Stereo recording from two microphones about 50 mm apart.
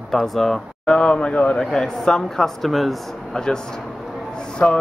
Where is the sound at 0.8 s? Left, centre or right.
Centre.